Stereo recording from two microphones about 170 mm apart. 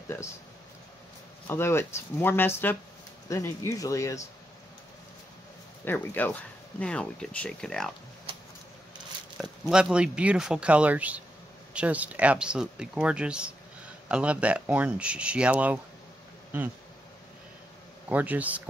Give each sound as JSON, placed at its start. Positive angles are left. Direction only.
{"t": 1.5, "sound": "speech", "side_deg": 15}
{"t": 5.9, "sound": "speech", "side_deg": 10}
{"t": 9.4, "sound": "speech", "side_deg": -5}
{"t": 18.0, "sound": "speech", "side_deg": -10}